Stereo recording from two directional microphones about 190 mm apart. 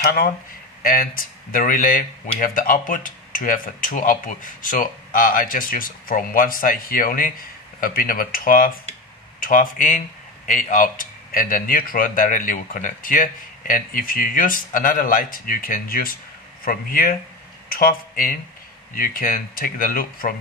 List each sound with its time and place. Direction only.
0.0 s speech: 50° left (ahead or behind)